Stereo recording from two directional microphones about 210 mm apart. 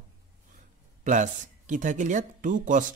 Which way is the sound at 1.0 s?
35° right (ahead or behind).